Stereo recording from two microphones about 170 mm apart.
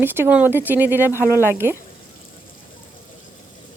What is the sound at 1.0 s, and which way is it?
Speech, 15° left (ahead or behind).